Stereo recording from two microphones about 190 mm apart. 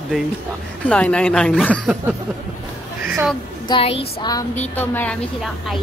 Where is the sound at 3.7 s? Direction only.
30° left (ahead or behind).